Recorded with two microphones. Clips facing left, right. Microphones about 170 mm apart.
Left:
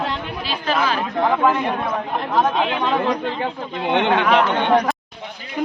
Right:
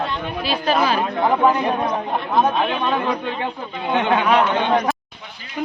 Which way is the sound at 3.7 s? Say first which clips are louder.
Left 2 dB; 70° left (ahead or behind).